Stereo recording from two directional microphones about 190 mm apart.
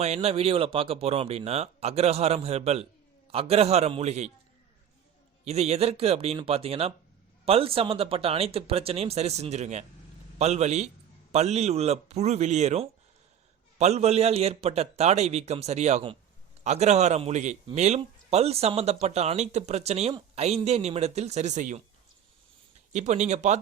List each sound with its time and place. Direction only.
0.0 s speech: 35° right (ahead or behind)
5.5 s speech: 35° right (ahead or behind)
22.9 s speech: 40° right (ahead or behind)